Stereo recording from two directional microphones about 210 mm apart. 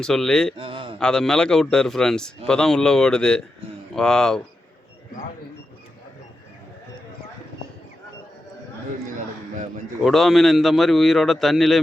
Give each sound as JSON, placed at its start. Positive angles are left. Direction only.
{"t": 0.0, "sound": "a man's voice", "side_deg": 0}
{"t": 0.5, "sound": "a sound", "side_deg": -25}
{"t": 0.9, "sound": "a man's voice", "side_deg": 5}
{"t": 10.0, "sound": "a man's voice", "side_deg": 0}